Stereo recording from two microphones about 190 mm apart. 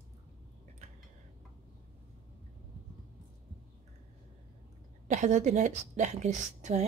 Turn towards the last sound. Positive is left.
turn(degrees=-40)  # may be behind; listen again after turning